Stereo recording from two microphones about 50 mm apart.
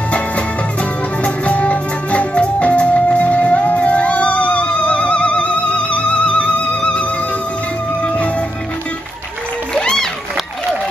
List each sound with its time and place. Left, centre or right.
1.2 s music: left
9.8 s music: centre